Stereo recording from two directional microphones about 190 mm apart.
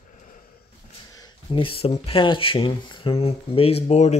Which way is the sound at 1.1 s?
20° left (ahead or behind).